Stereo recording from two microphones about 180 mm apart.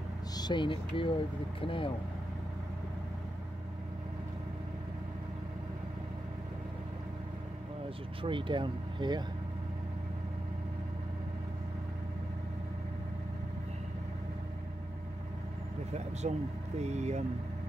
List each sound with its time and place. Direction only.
0.4 s speech: 25° left (ahead or behind)
8.2 s speech: 25° right (ahead or behind)
15.9 s speech: 40° right (ahead or behind)